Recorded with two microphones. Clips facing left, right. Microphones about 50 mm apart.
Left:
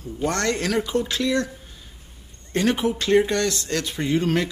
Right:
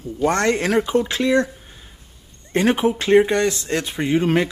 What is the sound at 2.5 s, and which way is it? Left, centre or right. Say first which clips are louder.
Speech: right 4 dB; right.